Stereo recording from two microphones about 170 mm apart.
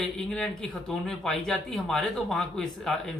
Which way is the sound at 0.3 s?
5° left (ahead or behind).